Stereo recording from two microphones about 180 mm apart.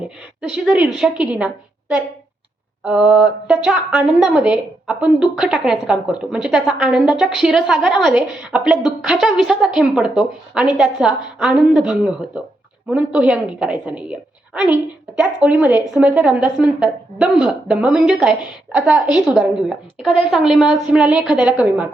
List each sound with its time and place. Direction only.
0.5 s speech: 5° right (ahead or behind)
2.8 s speech: 5° right (ahead or behind)